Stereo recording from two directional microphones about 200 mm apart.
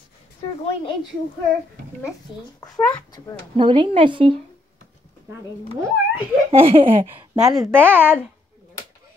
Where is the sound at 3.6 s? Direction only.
25° right (ahead or behind).